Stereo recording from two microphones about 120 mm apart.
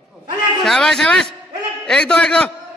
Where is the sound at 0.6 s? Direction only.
5° left (ahead or behind).